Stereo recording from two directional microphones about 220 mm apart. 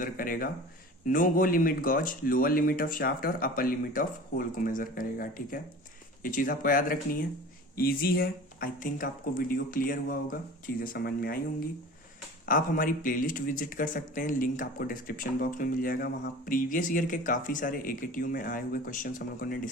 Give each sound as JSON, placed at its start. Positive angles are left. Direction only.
{"t": 0.0, "sound": "speech", "side_deg": 40}
{"t": 12.5, "sound": "speech", "side_deg": 40}